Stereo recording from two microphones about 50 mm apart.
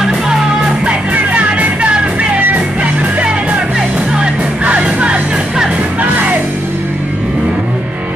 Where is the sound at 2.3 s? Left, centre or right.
Right.